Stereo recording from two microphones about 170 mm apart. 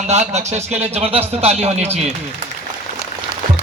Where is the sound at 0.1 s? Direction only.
40° right (ahead or behind).